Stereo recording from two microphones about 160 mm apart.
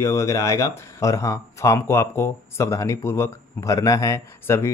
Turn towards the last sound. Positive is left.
turn(degrees=15)  # may be behind; listen again after turning